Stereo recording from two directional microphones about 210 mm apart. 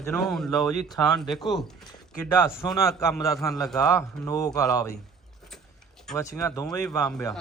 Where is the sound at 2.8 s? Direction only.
15° left (ahead or behind).